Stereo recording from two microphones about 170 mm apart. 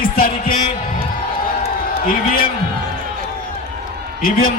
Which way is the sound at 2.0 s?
60° left (ahead or behind).